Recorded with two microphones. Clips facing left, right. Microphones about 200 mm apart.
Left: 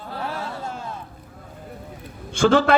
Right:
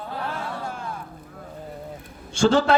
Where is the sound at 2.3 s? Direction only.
55° left (ahead or behind).